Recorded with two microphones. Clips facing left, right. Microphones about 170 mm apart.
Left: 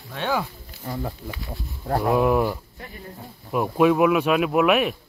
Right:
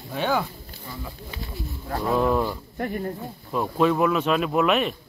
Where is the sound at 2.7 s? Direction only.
55° right (ahead or behind).